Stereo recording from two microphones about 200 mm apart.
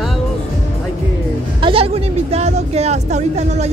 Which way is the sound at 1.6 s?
30° right (ahead or behind).